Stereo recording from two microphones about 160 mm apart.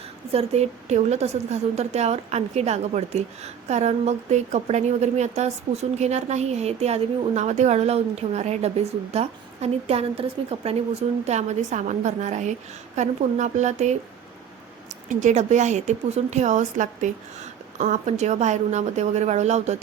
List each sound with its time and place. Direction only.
0.3 s a woman's voice: 40° right (ahead or behind)